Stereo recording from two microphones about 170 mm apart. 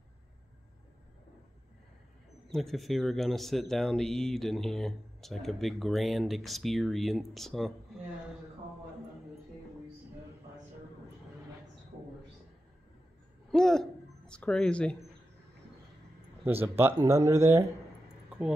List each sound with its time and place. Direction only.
2.5 s speech: centre (ahead or behind)
13.5 s a sound: centre (ahead or behind)
16.4 s speech: 10° right (ahead or behind)